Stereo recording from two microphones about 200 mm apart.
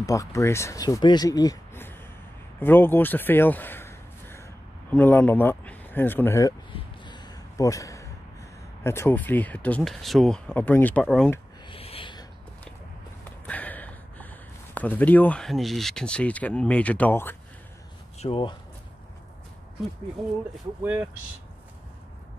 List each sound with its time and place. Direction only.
0.0 s a man's voice: 15° left (ahead or behind)
6.7 s a sound: 20° left (ahead or behind)
8.8 s speech: 10° left (ahead or behind)
11.7 s a sound: 30° left (ahead or behind)
13.5 s a sound: 10° left (ahead or behind)
14.7 s speech: 10° left (ahead or behind)
18.2 s speech: 25° left (ahead or behind)
20.2 s speech: centre (ahead or behind)
20.8 s speech: 10° right (ahead or behind)